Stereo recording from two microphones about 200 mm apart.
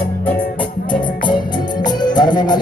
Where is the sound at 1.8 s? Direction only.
20° left (ahead or behind).